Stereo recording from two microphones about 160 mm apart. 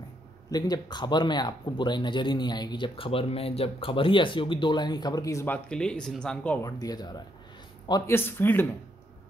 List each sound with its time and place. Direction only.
0.5 s speech: 25° left (ahead or behind)
5.7 s speech: 5° left (ahead or behind)
6.6 s speech: 25° left (ahead or behind)
8.1 s speech: 15° left (ahead or behind)